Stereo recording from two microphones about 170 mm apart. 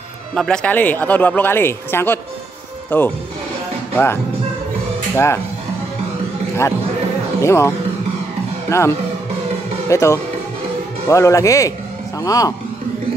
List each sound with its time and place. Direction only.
0.3 s speech: 5° left (ahead or behind)
7.4 s speech: 15° left (ahead or behind)